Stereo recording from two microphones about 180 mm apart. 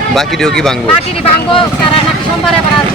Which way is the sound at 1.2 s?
30° left (ahead or behind).